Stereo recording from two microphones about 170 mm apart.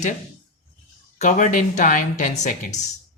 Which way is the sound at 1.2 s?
45° left (ahead or behind).